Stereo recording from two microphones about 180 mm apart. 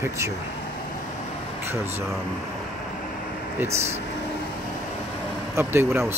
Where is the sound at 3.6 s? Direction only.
15° right (ahead or behind).